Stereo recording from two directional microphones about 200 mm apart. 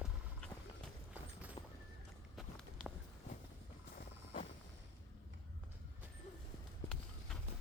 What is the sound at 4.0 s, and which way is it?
Vehicle, 40° left (ahead or behind).